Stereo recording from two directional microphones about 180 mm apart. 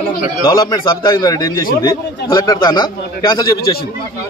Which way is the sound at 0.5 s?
20° left (ahead or behind).